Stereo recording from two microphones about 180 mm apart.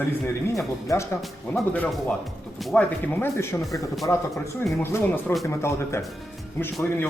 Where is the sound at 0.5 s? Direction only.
15° left (ahead or behind).